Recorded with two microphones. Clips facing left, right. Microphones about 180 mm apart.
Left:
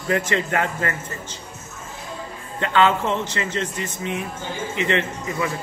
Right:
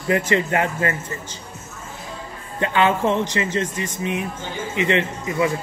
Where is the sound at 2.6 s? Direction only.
15° right (ahead or behind).